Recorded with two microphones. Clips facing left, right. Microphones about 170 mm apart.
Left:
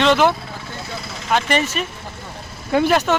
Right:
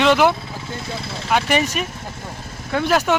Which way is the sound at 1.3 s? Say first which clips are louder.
Even; 10° right (ahead or behind).